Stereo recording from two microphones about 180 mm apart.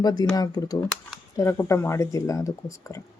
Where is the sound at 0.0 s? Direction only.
20° left (ahead or behind).